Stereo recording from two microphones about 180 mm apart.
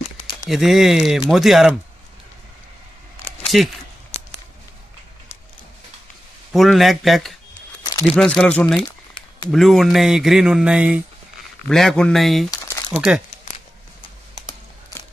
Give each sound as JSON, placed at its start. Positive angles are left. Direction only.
{"t": 0.5, "sound": "speech", "side_deg": 0}
{"t": 3.5, "sound": "speech", "side_deg": 0}
{"t": 4.1, "sound": "a sound", "side_deg": 35}
{"t": 6.5, "sound": "speech", "side_deg": 0}